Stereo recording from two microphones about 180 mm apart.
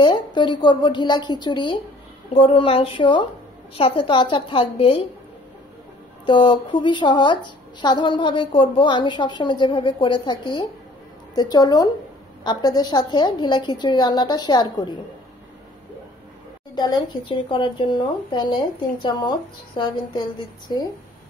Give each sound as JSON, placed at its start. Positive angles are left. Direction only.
{"t": 0.0, "sound": "a woman's voice", "side_deg": 25}
{"t": 6.2, "sound": "a woman's voice", "side_deg": 25}
{"t": 16.7, "sound": "a woman's voice", "side_deg": 25}